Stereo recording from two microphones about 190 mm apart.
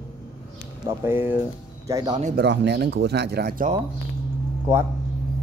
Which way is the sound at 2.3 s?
65° right (ahead or behind).